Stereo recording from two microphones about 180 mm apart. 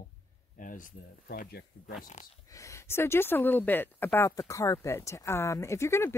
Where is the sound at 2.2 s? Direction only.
40° left (ahead or behind).